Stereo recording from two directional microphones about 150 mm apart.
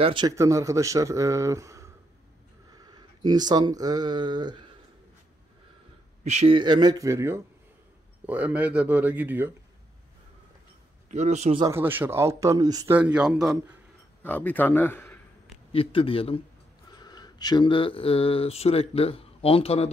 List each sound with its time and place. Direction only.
0.0 s speech: 35° right (ahead or behind)
0.4 s speech: 20° right (ahead or behind)
6.2 s speech: 50° right (ahead or behind)
6.5 s speech: 30° right (ahead or behind); by 9.6 s 15° right (ahead or behind)
11.1 s a man's voice: 50° right (ahead or behind)
11.7 s speech: 15° right (ahead or behind)
12.9 s speech: 10° right (ahead or behind)
14.2 s a man's voice: 10° left (ahead or behind)
15.7 s speech: 40° left (ahead or behind)
17.0 s speech: 25° left (ahead or behind)